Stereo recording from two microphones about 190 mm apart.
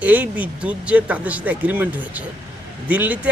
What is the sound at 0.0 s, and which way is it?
A man's voice, 10° right (ahead or behind).